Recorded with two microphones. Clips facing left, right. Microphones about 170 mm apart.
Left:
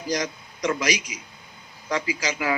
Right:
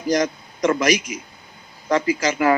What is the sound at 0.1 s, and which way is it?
A man's voice, 50° right (ahead or behind).